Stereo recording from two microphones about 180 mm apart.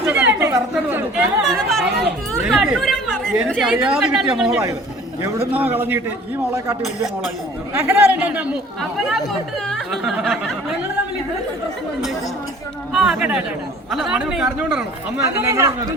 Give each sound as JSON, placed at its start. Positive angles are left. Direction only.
{"t": 0.1, "sound": "chatter", "side_deg": -10}
{"t": 2.5, "sound": "speech", "side_deg": 0}
{"t": 7.7, "sound": "speech", "side_deg": -10}
{"t": 12.9, "sound": "speech", "side_deg": -5}
{"t": 15.4, "sound": "speech", "side_deg": -15}